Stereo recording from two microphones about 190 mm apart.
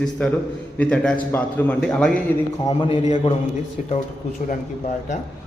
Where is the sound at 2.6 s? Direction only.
25° left (ahead or behind).